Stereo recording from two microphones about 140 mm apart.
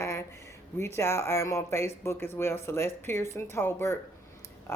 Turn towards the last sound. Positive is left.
turn(degrees=15)  # may be behind; listen again after turning